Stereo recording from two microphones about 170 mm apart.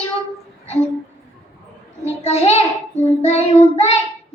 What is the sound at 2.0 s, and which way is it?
A child's voice, 40° left (ahead or behind).